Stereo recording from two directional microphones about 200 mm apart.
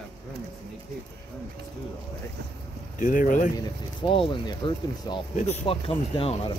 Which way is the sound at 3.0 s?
40° left (ahead or behind).